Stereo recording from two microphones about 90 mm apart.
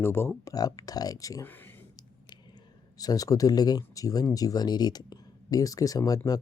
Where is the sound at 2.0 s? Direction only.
55° left (ahead or behind).